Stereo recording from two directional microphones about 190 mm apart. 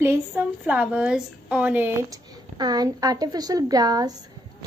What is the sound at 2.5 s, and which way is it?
Speech, 20° right (ahead or behind).